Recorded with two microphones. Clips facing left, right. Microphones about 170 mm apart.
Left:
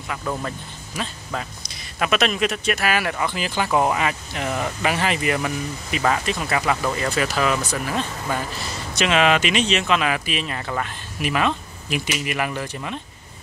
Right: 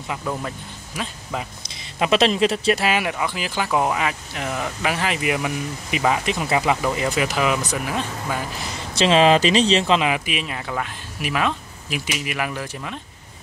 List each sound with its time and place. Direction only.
0.2 s speech: 5° right (ahead or behind)
1.7 s speech: 25° right (ahead or behind)
3.1 s speech: 5° right (ahead or behind)
8.9 s speech: 30° right (ahead or behind); by 13.0 s centre (ahead or behind)